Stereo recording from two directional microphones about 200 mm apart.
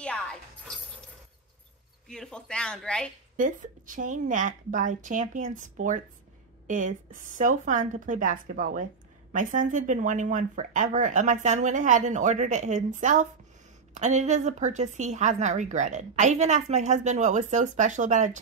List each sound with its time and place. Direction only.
0.0 s music: 5° left (ahead or behind)
2.0 s speech: 5° left (ahead or behind)
3.3 s a woman's voice: 40° right (ahead or behind)